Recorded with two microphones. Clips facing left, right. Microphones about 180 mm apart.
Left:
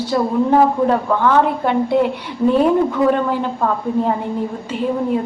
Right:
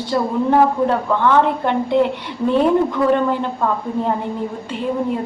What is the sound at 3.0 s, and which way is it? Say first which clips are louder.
Speech: left 1 dB; 20° left (ahead or behind).